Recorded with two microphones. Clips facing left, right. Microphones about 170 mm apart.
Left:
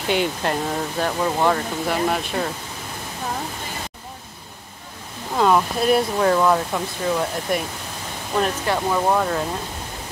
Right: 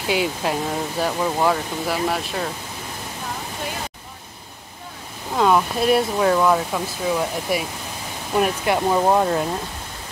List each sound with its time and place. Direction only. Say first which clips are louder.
0.1 s speech: even; 5° right (ahead or behind)
5.3 s speech: even; centre (ahead or behind)
8.4 s speech: right 2 dB; 15° right (ahead or behind)